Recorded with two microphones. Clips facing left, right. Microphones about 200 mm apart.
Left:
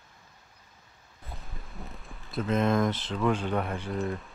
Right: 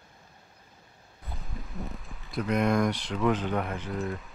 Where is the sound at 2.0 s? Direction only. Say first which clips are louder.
Left 2 dB; centre (ahead or behind).